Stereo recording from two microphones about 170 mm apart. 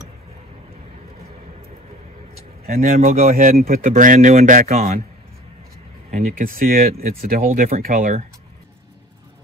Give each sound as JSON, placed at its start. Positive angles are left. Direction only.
{"t": 2.6, "sound": "speech", "side_deg": -60}
{"t": 6.0, "sound": "speech", "side_deg": -50}